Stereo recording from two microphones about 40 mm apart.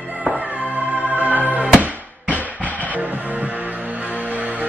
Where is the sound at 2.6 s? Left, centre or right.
Left.